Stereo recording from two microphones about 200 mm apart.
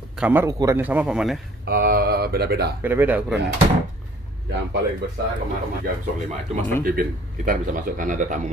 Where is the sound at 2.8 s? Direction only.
10° right (ahead or behind).